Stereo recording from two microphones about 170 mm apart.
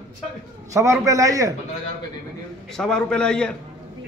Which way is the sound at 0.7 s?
20° right (ahead or behind).